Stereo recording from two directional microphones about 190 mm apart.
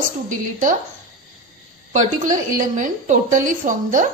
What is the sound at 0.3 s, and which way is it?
Speech, 45° right (ahead or behind).